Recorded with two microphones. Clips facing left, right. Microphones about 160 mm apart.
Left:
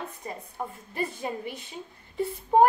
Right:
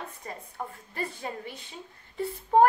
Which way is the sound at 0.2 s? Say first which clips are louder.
Left 2 dB; 20° left (ahead or behind).